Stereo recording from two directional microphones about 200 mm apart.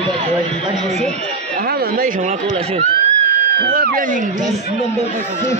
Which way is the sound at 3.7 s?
50° right (ahead or behind).